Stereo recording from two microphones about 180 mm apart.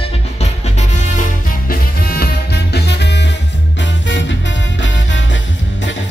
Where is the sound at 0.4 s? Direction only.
40° left (ahead or behind).